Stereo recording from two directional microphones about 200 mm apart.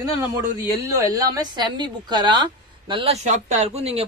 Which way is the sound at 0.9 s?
15° right (ahead or behind).